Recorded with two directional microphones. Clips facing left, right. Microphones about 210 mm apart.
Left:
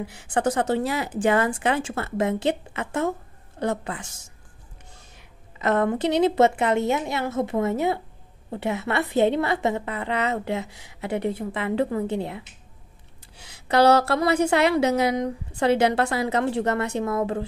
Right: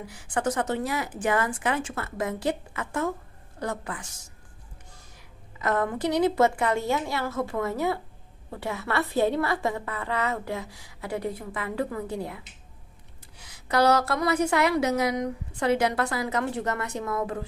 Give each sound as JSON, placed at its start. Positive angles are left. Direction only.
{"t": 0.0, "sound": "a woman's voice", "side_deg": 25}